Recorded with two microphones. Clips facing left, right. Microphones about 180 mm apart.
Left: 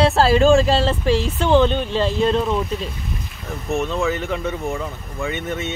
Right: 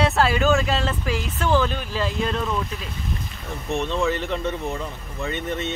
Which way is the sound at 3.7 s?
5° left (ahead or behind).